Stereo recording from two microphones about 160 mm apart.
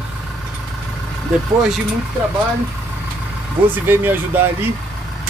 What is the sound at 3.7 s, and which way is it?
Speech, 15° right (ahead or behind).